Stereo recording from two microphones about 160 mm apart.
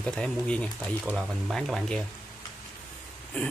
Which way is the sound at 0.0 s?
5° left (ahead or behind).